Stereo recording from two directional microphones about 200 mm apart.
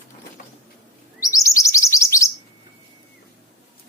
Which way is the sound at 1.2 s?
15° left (ahead or behind).